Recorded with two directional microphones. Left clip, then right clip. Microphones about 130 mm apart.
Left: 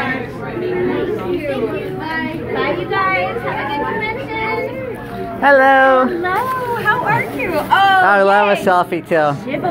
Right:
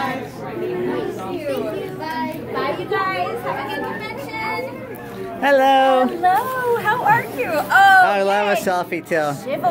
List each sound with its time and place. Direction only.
5.4 s speech: 50° right (ahead or behind)
7.4 s speech: 85° right
8.0 s a woman's voice: 20° right (ahead or behind)